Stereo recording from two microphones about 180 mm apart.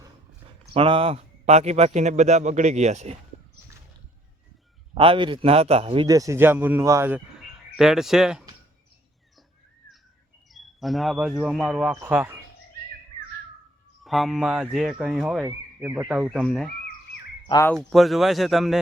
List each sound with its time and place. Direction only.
0.7 s a man's voice: 30° right (ahead or behind)
4.9 s a man's voice: 30° right (ahead or behind)
6.1 s speech: 20° right (ahead or behind)
10.5 s speech: centre (ahead or behind)
14.0 s speech: centre (ahead or behind)
15.4 s speech: 15° right (ahead or behind); by 16.7 s 5° left (ahead or behind)
17.4 s speech: 15° left (ahead or behind)
17.9 s speech: centre (ahead or behind)